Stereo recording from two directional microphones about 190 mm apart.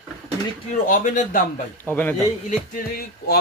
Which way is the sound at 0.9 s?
45° left (ahead or behind).